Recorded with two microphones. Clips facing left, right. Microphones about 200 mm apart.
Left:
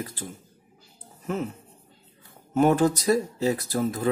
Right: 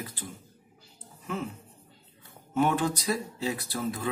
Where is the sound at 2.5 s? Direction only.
40° left (ahead or behind).